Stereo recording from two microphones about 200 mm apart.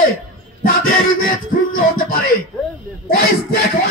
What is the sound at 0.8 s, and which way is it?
Music, 45° left (ahead or behind).